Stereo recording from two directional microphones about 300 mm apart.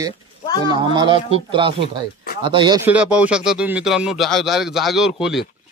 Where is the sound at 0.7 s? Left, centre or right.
Centre.